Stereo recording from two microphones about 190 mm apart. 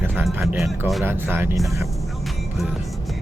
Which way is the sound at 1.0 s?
10° right (ahead or behind).